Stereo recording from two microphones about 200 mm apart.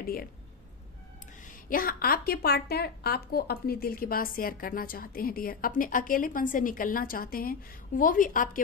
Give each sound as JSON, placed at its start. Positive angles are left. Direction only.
{"t": 0.0, "sound": "speech", "side_deg": 50}
{"t": 1.5, "sound": "a woman's voice", "side_deg": 45}